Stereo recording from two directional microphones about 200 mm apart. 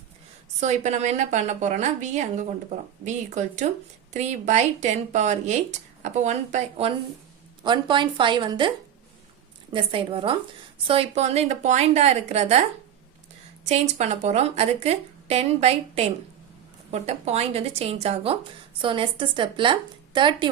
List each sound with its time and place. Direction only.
0.6 s a woman's voice: 35° right (ahead or behind)
9.7 s a woman's voice: 25° right (ahead or behind)
13.7 s a woman's voice: 35° right (ahead or behind)